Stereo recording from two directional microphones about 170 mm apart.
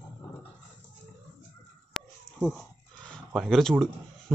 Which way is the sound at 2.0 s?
Centre (ahead or behind).